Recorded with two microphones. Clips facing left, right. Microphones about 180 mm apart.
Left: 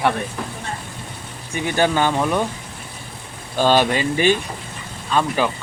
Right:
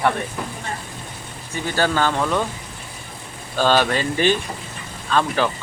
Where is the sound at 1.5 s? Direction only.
15° left (ahead or behind).